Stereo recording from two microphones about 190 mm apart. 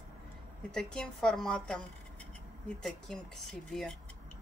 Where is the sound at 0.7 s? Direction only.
5° left (ahead or behind).